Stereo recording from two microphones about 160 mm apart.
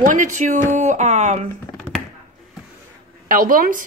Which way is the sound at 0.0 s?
50° right (ahead or behind).